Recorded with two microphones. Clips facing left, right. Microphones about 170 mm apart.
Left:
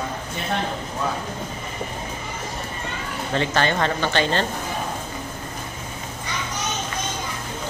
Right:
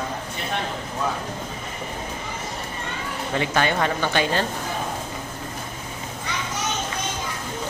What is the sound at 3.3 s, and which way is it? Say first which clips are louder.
Speech: left 1 dB; 10° right (ahead or behind).